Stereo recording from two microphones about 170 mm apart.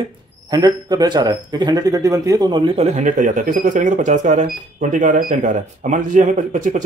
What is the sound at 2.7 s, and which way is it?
Speech, 40° right (ahead or behind).